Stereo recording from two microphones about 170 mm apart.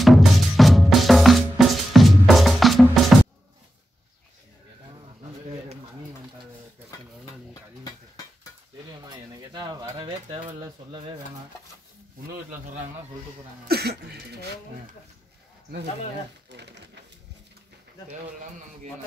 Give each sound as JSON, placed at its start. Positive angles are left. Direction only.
{"t": 0.0, "sound": "drum", "side_deg": 0}
{"t": 9.1, "sound": "pigeon", "side_deg": -25}
{"t": 13.7, "sound": "speech", "side_deg": -70}
{"t": 16.5, "sound": "speech", "side_deg": -90}